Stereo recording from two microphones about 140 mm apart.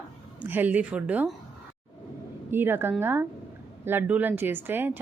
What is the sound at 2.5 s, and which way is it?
A woman's voice, 15° right (ahead or behind).